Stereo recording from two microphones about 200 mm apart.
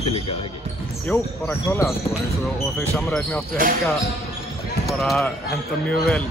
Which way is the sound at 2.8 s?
10° left (ahead or behind).